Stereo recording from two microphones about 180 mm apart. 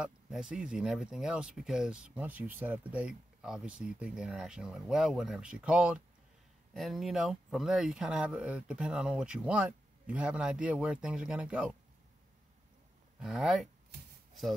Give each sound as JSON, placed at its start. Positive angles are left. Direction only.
{"t": 0.0, "sound": "speech", "side_deg": -5}
{"t": 13.2, "sound": "speech", "side_deg": -5}